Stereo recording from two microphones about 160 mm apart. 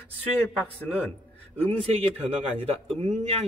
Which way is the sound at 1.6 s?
35° right (ahead or behind).